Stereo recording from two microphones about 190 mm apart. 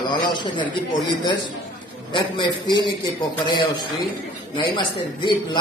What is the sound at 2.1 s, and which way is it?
A man's voice, 25° left (ahead or behind).